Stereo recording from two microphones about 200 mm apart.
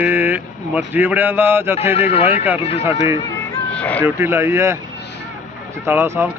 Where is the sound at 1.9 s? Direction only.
30° left (ahead or behind).